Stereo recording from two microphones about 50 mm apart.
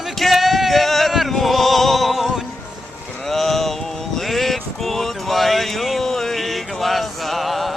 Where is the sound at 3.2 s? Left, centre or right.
Centre.